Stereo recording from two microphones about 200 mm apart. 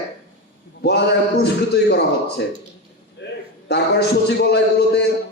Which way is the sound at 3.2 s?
60° left (ahead or behind).